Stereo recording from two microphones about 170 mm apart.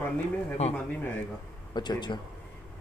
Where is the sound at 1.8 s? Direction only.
25° left (ahead or behind).